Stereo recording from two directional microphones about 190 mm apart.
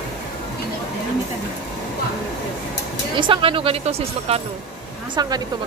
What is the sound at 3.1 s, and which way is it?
Speech, 30° right (ahead or behind).